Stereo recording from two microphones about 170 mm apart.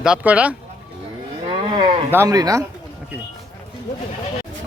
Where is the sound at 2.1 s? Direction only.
20° right (ahead or behind).